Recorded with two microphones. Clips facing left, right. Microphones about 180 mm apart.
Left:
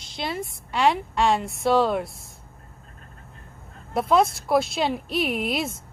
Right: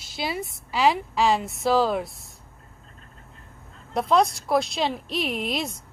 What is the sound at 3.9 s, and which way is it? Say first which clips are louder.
Speech: left 1 dB; centre (ahead or behind).